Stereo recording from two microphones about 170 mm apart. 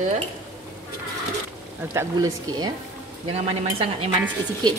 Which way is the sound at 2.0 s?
20° right (ahead or behind).